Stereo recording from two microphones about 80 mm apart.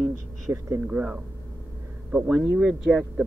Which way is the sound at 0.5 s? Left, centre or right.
Right.